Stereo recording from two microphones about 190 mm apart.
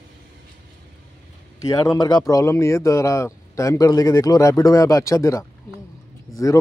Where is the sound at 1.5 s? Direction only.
20° left (ahead or behind).